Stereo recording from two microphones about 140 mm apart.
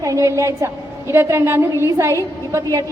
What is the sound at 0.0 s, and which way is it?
A woman's voice, 25° right (ahead or behind).